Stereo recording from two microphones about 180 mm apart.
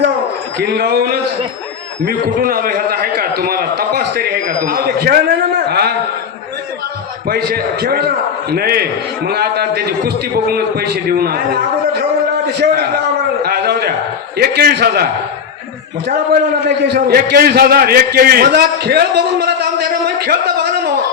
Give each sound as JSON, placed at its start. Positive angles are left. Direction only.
{"t": 0.6, "sound": "a man's voice", "side_deg": -65}
{"t": 7.3, "sound": "a man's voice", "side_deg": -60}
{"t": 12.5, "sound": "a man's voice", "side_deg": -70}
{"t": 13.4, "sound": "a sound", "side_deg": -60}
{"t": 14.3, "sound": "a man's voice", "side_deg": -60}
{"t": 16.0, "sound": "a man's voice", "side_deg": -65}